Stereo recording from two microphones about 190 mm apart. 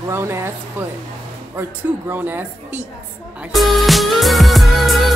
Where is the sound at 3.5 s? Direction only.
Centre (ahead or behind).